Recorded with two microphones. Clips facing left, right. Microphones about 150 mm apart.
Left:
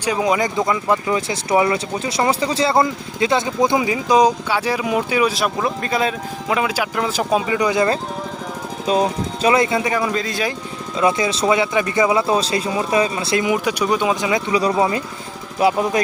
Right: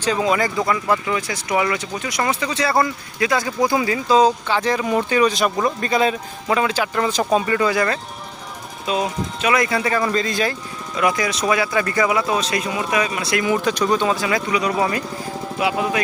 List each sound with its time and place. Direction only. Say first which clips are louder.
0.0 s speech: left 1 dB; 15° left (ahead or behind)
8.9 s speech: left 4 dB; 35° left (ahead or behind); by 10.5 s 5° left (ahead or behind)
10.9 s speech: left 2 dB; 25° left (ahead or behind)
13.5 s speech: right 3 dB; 10° left (ahead or behind)
15.5 s speech: left 4 dB; 40° left (ahead or behind)